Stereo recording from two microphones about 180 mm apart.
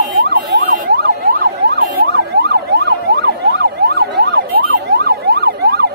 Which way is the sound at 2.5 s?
70° right (ahead or behind).